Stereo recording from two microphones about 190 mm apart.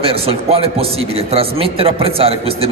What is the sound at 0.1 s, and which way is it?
A man's voice, 30° right (ahead or behind).